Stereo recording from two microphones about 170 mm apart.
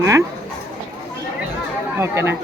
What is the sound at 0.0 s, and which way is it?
Speech, 20° right (ahead or behind).